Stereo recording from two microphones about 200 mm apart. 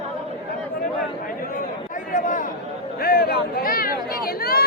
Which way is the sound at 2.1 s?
40° left (ahead or behind).